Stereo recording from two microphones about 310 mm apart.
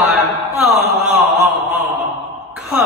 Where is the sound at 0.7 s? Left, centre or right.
Left.